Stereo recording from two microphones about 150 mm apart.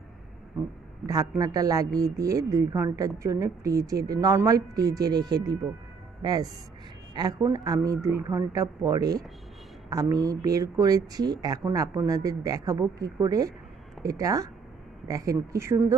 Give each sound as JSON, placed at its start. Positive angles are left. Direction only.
{"t": 1.0, "sound": "a woman's voice", "side_deg": -25}